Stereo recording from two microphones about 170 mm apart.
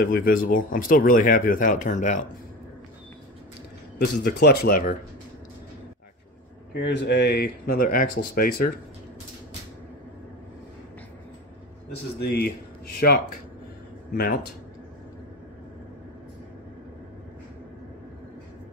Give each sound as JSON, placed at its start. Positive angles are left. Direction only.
{"t": 0.0, "sound": "speech", "side_deg": 55}
{"t": 4.0, "sound": "speech", "side_deg": 60}
{"t": 6.7, "sound": "speech", "side_deg": 85}
{"t": 12.4, "sound": "speech", "side_deg": 65}